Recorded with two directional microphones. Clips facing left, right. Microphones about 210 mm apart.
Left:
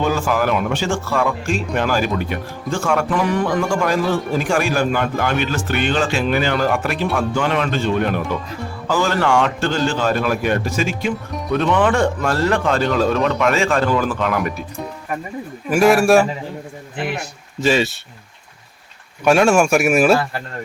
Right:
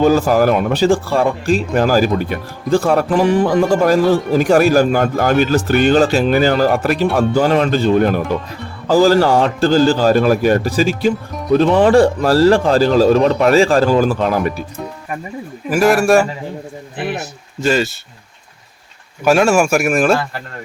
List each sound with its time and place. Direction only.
0.0 s speech: 40° right (ahead or behind)
15.7 s speech: centre (ahead or behind)
17.6 s speech: centre (ahead or behind)
19.2 s speech: centre (ahead or behind)